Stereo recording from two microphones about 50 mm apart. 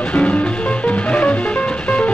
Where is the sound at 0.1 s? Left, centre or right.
Left.